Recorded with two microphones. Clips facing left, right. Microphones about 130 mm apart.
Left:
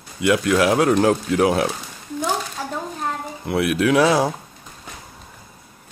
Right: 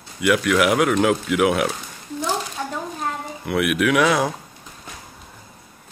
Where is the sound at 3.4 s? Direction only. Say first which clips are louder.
Left 1 dB; 30° left (ahead or behind).